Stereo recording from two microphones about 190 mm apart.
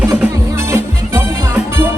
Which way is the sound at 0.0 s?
10° right (ahead or behind).